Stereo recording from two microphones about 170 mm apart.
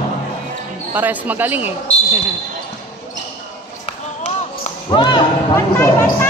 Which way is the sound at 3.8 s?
45° left (ahead or behind).